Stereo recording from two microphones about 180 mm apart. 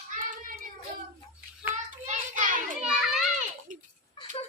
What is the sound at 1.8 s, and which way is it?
Speech, 45° right (ahead or behind).